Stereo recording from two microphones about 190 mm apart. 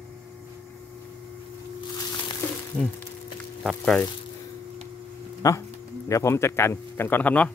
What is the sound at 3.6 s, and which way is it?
Speech, centre (ahead or behind).